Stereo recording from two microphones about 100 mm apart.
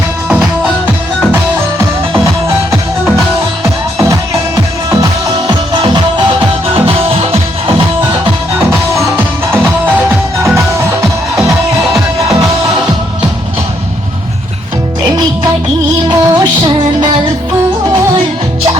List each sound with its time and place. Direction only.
3.6 s music: 30° right (ahead or behind)
6.7 s music: 70° right (ahead or behind)
9.1 s music: 20° right (ahead or behind)
16.2 s music: 45° right (ahead or behind)